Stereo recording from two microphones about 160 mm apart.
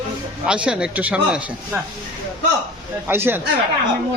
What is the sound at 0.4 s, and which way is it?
A man's voice, 5° right (ahead or behind).